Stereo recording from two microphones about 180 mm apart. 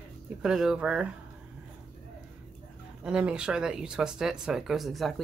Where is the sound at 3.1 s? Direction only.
5° right (ahead or behind).